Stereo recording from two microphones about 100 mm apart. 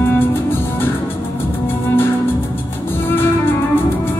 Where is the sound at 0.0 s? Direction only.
20° left (ahead or behind).